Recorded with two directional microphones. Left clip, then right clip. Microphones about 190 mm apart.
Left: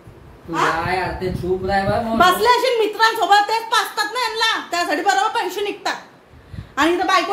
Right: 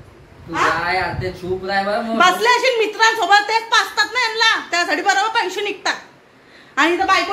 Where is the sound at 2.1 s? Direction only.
10° right (ahead or behind).